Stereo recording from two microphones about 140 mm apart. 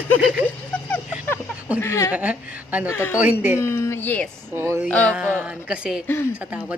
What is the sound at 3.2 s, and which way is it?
Speech, 10° right (ahead or behind).